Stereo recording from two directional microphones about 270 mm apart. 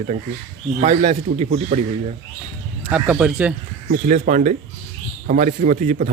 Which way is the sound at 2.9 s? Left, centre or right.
Centre.